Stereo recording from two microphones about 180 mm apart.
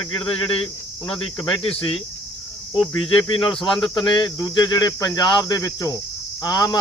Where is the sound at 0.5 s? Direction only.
30° left (ahead or behind).